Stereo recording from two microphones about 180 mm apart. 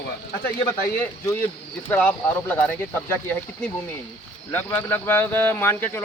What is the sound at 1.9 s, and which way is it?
Speech, 10° left (ahead or behind).